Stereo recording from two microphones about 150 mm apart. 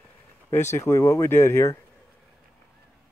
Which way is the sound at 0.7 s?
20° left (ahead or behind).